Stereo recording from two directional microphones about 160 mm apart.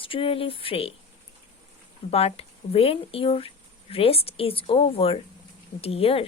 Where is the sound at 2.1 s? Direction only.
40° left (ahead or behind).